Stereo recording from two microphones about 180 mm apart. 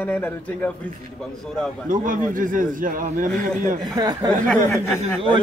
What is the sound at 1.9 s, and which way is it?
A man's voice, 45° right (ahead or behind).